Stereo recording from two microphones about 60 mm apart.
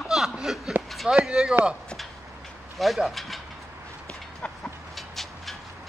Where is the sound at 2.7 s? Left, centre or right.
Centre.